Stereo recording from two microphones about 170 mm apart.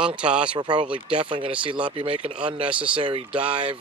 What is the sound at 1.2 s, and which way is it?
Mantra, 30° right (ahead or behind).